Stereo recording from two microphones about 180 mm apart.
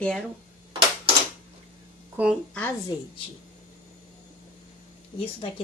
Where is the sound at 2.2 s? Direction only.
10° right (ahead or behind).